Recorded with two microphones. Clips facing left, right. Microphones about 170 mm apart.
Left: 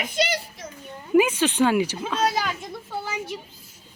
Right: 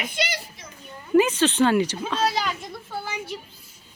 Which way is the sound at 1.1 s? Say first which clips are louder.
Even; 10° left (ahead or behind).